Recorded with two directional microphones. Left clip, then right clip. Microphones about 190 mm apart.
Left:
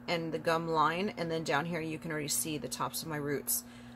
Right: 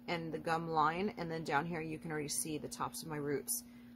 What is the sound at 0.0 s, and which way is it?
Speech, 15° right (ahead or behind).